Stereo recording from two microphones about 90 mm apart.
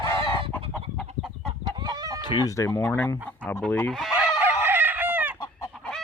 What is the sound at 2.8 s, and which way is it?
Speech, 15° left (ahead or behind).